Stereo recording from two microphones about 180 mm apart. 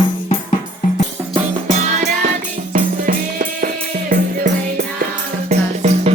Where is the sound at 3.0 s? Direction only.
50° right (ahead or behind).